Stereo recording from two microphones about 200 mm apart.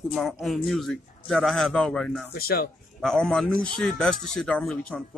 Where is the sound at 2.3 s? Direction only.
50° left (ahead or behind).